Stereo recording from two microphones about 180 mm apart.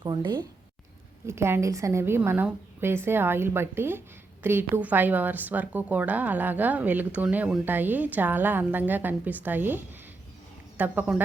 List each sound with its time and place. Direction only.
0.0 s speech: 25° right (ahead or behind)
1.3 s a woman's voice: 15° right (ahead or behind)